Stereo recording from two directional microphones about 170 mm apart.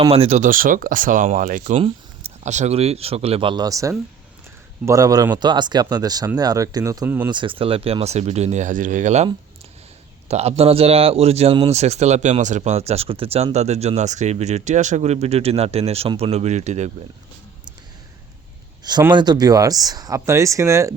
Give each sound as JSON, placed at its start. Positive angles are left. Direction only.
{"t": 0.0, "sound": "speech", "side_deg": -35}
{"t": 1.8, "sound": "speech", "side_deg": -40}
{"t": 7.0, "sound": "speech", "side_deg": -10}
{"t": 7.3, "sound": "speech", "side_deg": -30}
{"t": 19.1, "sound": "speech", "side_deg": -25}